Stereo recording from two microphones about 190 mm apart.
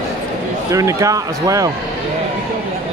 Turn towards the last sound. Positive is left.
turn(degrees=-15)  # may be behind; listen again after turning